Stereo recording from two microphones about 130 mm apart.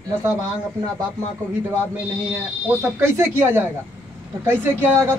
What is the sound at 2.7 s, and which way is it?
A man's voice, 15° right (ahead or behind).